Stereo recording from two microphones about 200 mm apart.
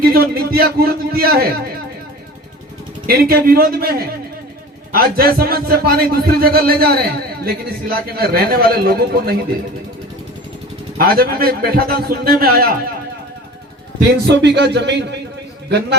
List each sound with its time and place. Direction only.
0.0 s a man's voice: 50° right (ahead or behind)
3.1 s a man's voice: 50° right (ahead or behind)
10.9 s a man's voice: 50° right (ahead or behind)
14.3 s a man's voice: 60° right (ahead or behind)